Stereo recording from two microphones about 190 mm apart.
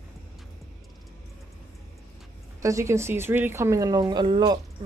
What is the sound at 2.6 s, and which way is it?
Speech, 15° right (ahead or behind).